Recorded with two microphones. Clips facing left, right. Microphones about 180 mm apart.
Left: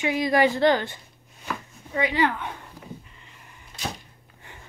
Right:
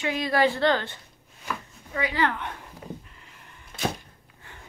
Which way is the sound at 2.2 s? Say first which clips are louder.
Left 2 dB; 5° left (ahead or behind).